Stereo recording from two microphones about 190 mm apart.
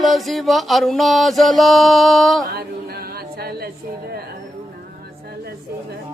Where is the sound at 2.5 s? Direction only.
55° right (ahead or behind).